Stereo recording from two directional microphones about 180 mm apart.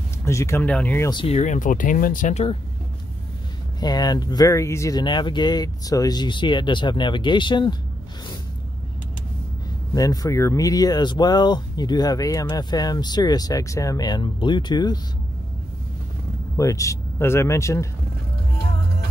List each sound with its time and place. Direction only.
0.2 s speech: 15° left (ahead or behind)
1.1 s speech: 35° left (ahead or behind)
3.8 s speech: 20° left (ahead or behind)
9.9 s speech: 20° left (ahead or behind)
16.5 s speech: 15° left (ahead or behind)